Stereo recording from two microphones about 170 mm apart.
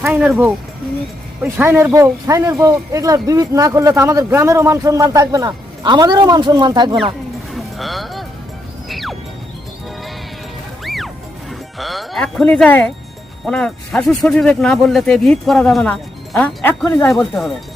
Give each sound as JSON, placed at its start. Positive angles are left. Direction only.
{"t": 0.1, "sound": "speech", "side_deg": -5}
{"t": 7.5, "sound": "music", "side_deg": 0}
{"t": 10.8, "sound": "music", "side_deg": 0}
{"t": 11.8, "sound": "speech", "side_deg": 0}